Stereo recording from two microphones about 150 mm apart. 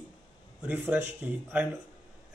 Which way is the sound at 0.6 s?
10° right (ahead or behind).